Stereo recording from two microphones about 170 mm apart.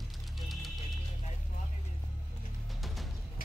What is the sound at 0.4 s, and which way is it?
Music, centre (ahead or behind).